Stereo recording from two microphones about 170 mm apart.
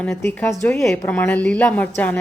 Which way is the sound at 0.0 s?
15° left (ahead or behind).